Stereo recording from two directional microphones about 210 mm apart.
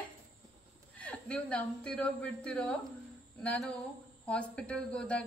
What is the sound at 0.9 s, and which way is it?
Speech, 5° left (ahead or behind).